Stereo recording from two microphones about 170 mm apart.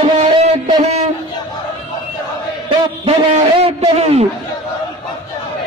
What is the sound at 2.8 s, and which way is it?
A man's voice, 30° right (ahead or behind).